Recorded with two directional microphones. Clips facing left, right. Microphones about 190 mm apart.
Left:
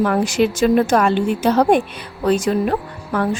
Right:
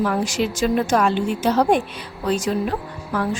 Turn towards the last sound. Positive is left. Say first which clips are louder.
# left 3 dB
turn(degrees=55)  # may be behind; listen again after turning